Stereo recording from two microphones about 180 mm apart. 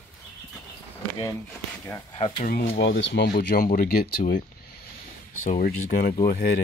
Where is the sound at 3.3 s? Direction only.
55° left (ahead or behind).